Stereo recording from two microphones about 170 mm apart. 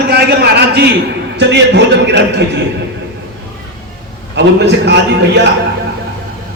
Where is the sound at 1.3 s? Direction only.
90° right.